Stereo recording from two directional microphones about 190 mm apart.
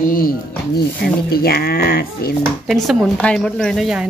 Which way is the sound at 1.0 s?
55° left (ahead or behind).